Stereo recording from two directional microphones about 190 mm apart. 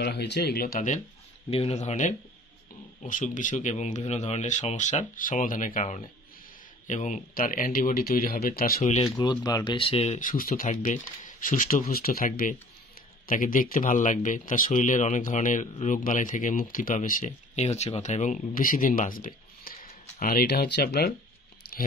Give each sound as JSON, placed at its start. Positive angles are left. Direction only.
{"t": 0.0, "sound": "speech", "side_deg": 60}
{"t": 8.8, "sound": "speech", "side_deg": 30}
{"t": 21.6, "sound": "chewing", "side_deg": 55}